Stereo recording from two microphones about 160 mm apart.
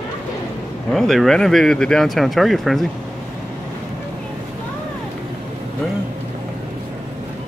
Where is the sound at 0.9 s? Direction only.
Centre (ahead or behind).